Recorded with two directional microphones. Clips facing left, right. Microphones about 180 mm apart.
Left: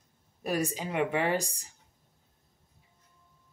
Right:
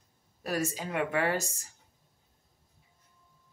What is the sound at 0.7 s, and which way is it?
Speech, 15° left (ahead or behind).